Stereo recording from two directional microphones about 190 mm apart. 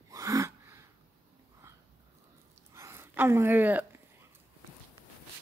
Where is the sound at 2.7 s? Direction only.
15° right (ahead or behind).